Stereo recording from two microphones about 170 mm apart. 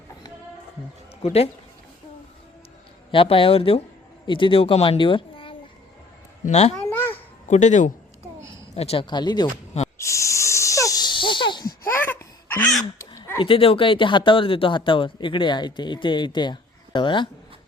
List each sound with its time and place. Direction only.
1.2 s speech: 35° left (ahead or behind)
3.1 s speech: 30° left (ahead or behind)
6.7 s babbling: 10° left (ahead or behind)
7.4 s speech: 45° left (ahead or behind); by 9.5 s 25° left (ahead or behind)
10.0 s a sound: 15° left (ahead or behind)
11.9 s a sound: 10° left (ahead or behind)
13.4 s speech: 30° left (ahead or behind)